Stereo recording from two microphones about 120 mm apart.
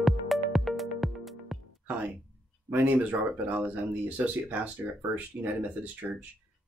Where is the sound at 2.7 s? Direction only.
15° right (ahead or behind).